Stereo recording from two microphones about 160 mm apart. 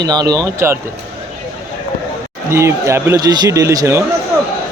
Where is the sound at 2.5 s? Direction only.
15° right (ahead or behind).